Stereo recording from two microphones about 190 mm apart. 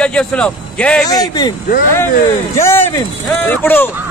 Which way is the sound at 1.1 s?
20° left (ahead or behind).